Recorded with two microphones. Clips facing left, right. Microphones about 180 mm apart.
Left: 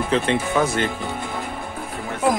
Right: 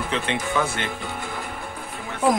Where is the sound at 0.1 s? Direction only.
40° left (ahead or behind).